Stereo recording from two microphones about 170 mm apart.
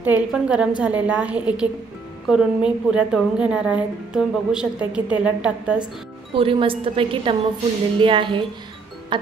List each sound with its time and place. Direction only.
0.0 s a woman's voice: 5° right (ahead or behind)
6.3 s a woman's voice: 30° right (ahead or behind)
9.1 s music: 30° right (ahead or behind)